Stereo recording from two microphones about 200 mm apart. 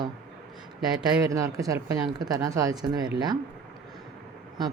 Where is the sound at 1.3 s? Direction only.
15° right (ahead or behind).